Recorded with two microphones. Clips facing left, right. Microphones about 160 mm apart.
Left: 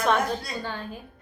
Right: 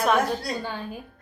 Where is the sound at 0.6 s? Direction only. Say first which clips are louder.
Right 1 dB; 15° right (ahead or behind).